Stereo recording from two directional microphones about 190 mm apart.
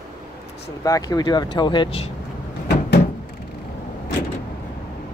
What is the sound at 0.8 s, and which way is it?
Speech, 20° left (ahead or behind).